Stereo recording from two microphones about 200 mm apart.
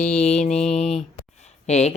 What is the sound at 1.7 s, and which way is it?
Speech, 30° left (ahead or behind).